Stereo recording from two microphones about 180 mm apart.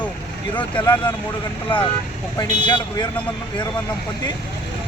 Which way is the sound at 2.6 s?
25° left (ahead or behind).